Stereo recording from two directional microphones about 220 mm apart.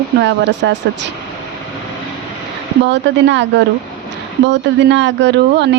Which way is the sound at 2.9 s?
55° right (ahead or behind).